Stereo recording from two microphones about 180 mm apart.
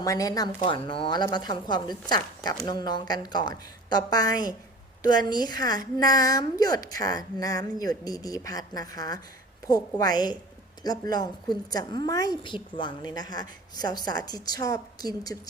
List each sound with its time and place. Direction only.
0.0 s a woman's voice: 20° left (ahead or behind)